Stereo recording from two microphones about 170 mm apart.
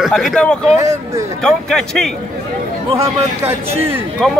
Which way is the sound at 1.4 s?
5° left (ahead or behind).